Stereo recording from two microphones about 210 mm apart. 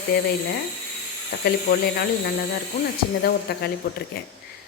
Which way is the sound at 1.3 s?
55° left (ahead or behind).